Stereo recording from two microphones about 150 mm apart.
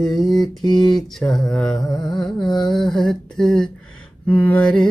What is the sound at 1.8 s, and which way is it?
Music, 25° left (ahead or behind).